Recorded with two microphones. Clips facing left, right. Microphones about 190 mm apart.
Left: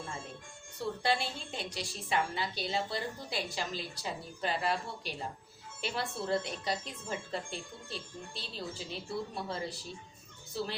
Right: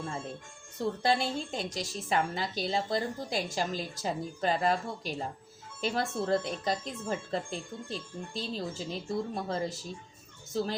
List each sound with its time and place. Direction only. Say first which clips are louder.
1.0 s a woman's voice: right 4 dB; 40° right (ahead or behind)